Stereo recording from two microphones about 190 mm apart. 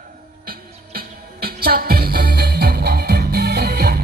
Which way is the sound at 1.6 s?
55° right (ahead or behind).